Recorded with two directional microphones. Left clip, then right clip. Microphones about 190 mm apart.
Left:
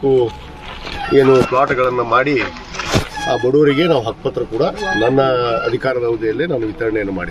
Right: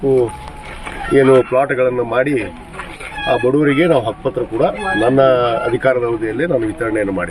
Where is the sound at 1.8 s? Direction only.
45° right (ahead or behind).